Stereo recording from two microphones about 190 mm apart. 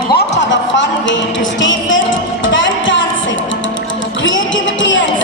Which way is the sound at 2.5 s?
75° left (ahead or behind).